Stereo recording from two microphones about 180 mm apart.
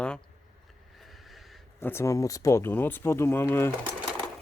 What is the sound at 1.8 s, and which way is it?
Speech, 15° left (ahead or behind).